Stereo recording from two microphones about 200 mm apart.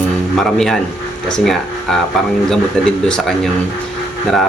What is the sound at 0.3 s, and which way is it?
Speech, centre (ahead or behind).